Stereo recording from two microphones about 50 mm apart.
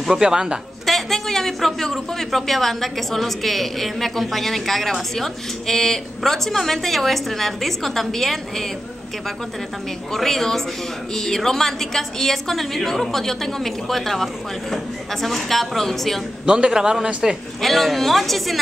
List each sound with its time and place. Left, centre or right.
0.0 s a man's voice: centre
0.8 s a man's voice: centre
10.1 s a man's voice: centre
16.4 s a man's voice: centre
17.6 s a man's voice: centre